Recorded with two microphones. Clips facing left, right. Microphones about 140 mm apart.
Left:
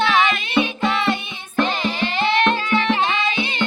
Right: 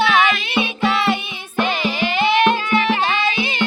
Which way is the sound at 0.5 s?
5° right (ahead or behind).